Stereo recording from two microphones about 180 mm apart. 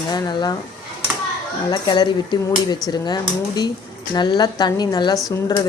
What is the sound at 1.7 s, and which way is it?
Speech, 25° left (ahead or behind).